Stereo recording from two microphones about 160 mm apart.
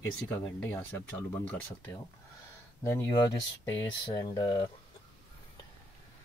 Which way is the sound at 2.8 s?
20° left (ahead or behind).